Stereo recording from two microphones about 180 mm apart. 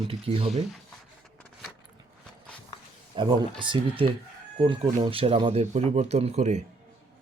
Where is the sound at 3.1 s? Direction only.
25° right (ahead or behind).